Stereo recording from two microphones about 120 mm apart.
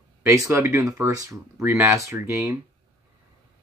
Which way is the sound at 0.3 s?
25° right (ahead or behind).